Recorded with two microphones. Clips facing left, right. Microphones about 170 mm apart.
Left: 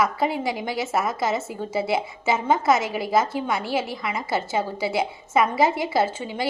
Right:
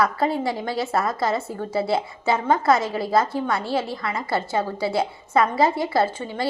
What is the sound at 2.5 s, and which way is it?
A woman's voice, 20° left (ahead or behind).